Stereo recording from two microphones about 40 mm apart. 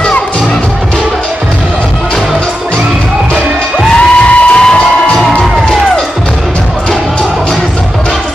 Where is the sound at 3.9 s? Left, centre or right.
Left.